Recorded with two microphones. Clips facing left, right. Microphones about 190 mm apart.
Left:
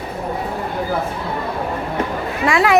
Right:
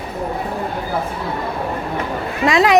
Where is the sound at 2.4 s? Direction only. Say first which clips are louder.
Right 2 dB; 20° right (ahead or behind).